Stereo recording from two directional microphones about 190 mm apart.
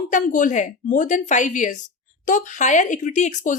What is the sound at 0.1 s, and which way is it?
A woman's voice, 45° left (ahead or behind).